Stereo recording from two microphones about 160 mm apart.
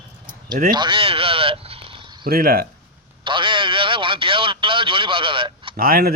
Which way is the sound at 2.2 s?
70° right (ahead or behind).